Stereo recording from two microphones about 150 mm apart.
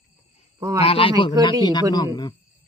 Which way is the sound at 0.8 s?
40° left (ahead or behind).